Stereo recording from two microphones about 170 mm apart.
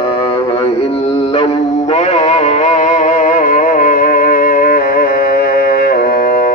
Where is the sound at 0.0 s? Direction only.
35° left (ahead or behind).